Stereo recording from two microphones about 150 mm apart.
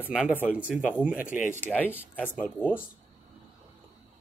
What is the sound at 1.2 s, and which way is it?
Speech, 60° left (ahead or behind).